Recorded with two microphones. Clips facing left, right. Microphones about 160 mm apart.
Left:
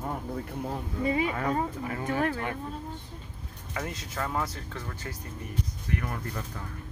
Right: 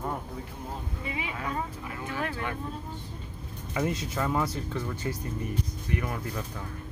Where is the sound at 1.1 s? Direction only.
40° left (ahead or behind).